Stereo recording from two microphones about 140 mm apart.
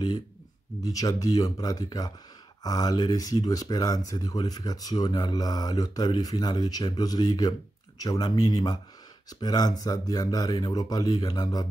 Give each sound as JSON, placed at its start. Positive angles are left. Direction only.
{"t": 0.8, "sound": "speech", "side_deg": 25}